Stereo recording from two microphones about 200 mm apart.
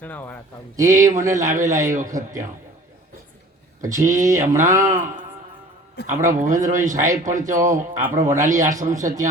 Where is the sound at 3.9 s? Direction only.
40° right (ahead or behind).